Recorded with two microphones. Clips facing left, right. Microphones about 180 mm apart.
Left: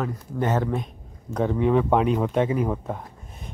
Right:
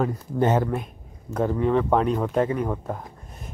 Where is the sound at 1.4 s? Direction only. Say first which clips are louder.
Left 1 dB; centre (ahead or behind).